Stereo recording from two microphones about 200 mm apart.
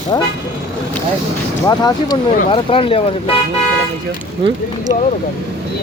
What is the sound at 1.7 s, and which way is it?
Speech, 20° left (ahead or behind).